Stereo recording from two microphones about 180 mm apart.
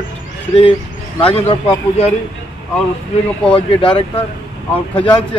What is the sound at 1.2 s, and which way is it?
Speech, 30° left (ahead or behind).